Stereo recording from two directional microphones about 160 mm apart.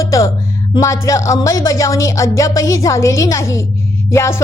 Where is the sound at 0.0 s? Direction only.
20° left (ahead or behind).